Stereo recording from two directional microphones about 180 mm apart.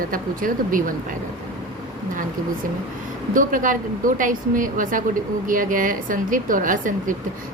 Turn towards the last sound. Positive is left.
turn(degrees=-45)  # may be behind; listen again after turning